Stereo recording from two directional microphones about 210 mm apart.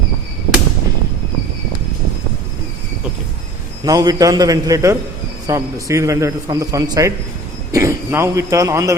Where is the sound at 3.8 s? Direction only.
15° right (ahead or behind).